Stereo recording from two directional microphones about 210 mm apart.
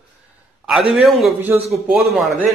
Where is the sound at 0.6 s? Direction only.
Centre (ahead or behind).